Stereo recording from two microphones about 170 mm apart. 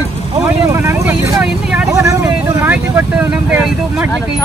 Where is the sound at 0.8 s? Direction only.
15° right (ahead or behind).